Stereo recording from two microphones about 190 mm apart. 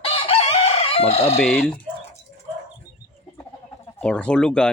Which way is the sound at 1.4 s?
5° left (ahead or behind).